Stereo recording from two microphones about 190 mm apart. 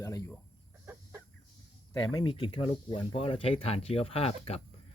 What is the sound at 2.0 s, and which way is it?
Speech, 20° left (ahead or behind).